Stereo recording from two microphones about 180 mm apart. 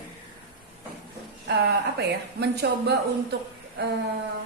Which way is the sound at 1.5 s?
65° right (ahead or behind).